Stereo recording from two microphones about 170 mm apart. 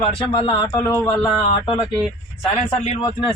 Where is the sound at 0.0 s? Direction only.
25° left (ahead or behind).